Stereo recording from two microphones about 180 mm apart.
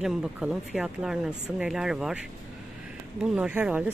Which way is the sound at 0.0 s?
5° right (ahead or behind).